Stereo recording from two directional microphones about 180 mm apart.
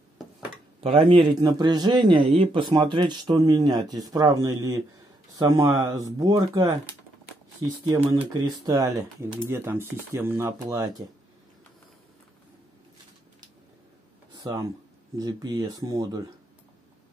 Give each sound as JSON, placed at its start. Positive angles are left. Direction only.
{"t": 0.7, "sound": "a man's voice", "side_deg": -30}
{"t": 7.8, "sound": "a man's voice", "side_deg": -25}
{"t": 14.3, "sound": "a man's voice", "side_deg": -20}